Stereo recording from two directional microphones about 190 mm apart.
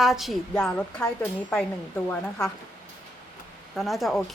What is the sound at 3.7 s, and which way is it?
Speech, centre (ahead or behind).